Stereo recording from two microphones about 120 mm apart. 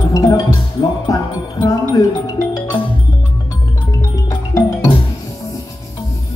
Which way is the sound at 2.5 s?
40° left (ahead or behind).